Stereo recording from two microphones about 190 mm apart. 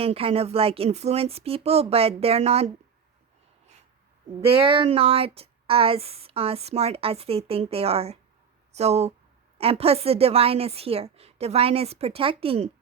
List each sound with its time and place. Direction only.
0.0 s speech: 30° right (ahead or behind)
4.4 s speech: 25° right (ahead or behind)